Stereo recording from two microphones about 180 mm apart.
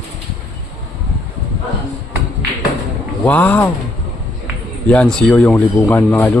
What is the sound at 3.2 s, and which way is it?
Speech, 10° left (ahead or behind).